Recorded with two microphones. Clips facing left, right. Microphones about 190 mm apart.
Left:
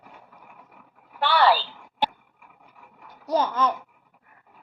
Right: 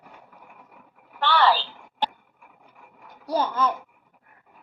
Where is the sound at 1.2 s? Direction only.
10° left (ahead or behind).